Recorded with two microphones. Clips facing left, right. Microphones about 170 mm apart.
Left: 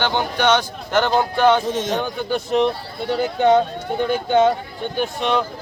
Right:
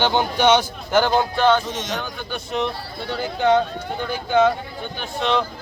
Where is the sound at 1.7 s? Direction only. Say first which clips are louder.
Left 6 dB; 55° left (ahead or behind).